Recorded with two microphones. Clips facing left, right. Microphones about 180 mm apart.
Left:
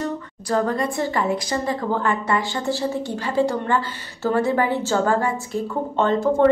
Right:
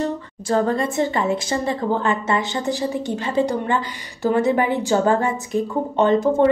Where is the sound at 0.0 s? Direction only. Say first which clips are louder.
Right 3 dB; 25° right (ahead or behind).